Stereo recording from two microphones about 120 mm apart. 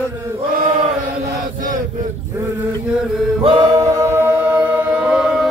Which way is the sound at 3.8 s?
25° right (ahead or behind).